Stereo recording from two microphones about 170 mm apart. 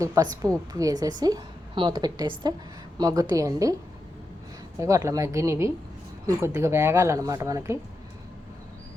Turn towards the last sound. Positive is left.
turn(degrees=-15)  # may be behind; listen again after turning